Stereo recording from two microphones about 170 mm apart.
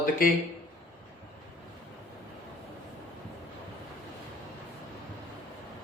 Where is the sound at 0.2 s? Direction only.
55° left (ahead or behind).